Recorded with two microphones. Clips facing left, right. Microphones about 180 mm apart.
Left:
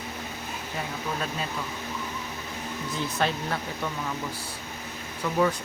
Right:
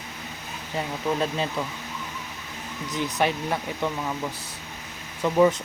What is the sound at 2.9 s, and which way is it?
Speech, 15° right (ahead or behind).